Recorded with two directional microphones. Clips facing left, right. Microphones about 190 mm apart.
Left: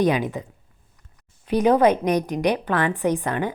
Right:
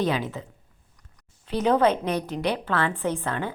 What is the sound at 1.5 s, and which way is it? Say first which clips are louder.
A woman's voice: left 4 dB; 10° left (ahead or behind).